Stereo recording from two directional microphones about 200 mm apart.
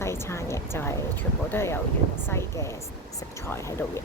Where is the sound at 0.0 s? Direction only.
15° left (ahead or behind).